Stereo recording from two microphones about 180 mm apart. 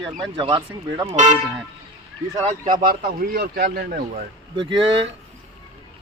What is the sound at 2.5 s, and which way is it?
Speech, 50° right (ahead or behind).